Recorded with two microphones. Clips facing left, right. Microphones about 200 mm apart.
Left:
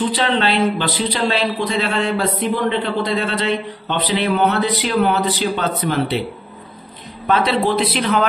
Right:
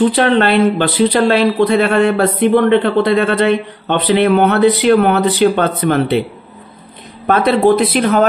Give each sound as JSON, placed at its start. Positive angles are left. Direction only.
{"t": 0.1, "sound": "speech", "side_deg": -55}
{"t": 7.2, "sound": "speech", "side_deg": -50}